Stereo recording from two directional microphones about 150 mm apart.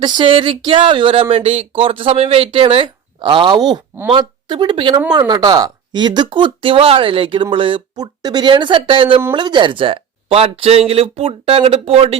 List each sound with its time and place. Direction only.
0.0 s speech: 30° right (ahead or behind)